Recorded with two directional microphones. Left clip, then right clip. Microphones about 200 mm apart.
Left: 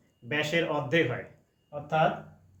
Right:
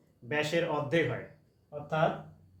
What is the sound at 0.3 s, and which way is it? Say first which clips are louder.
Speech: left 2 dB; 20° right (ahead or behind).